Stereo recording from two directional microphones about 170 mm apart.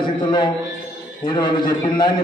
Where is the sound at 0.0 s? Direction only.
25° left (ahead or behind).